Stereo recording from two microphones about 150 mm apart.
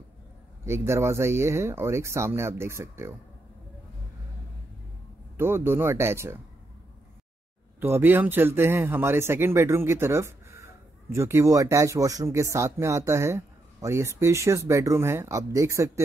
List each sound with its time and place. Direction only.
0.7 s speech: 20° right (ahead or behind)
5.4 s speech: 15° right (ahead or behind)
7.8 s speech: 15° right (ahead or behind)